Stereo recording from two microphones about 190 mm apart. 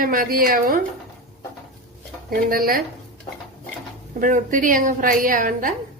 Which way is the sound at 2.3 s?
50° right (ahead or behind).